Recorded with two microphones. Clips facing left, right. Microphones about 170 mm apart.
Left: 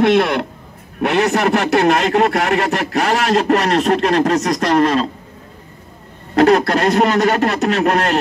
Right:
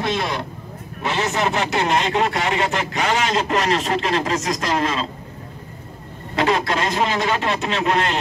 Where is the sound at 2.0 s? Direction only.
45° left (ahead or behind); by 4.8 s 60° left (ahead or behind).